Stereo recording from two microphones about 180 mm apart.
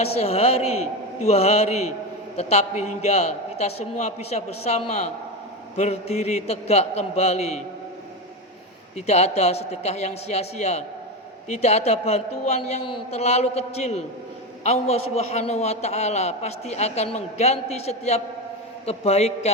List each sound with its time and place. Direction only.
0.0 s a man's voice: 35° left (ahead or behind)
9.0 s a man's voice: 35° left (ahead or behind)